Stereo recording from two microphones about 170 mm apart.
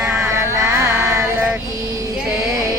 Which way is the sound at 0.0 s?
10° right (ahead or behind).